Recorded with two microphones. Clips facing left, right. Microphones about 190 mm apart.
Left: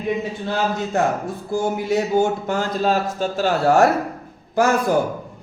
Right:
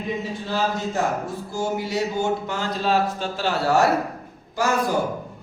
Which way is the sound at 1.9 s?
50° left (ahead or behind).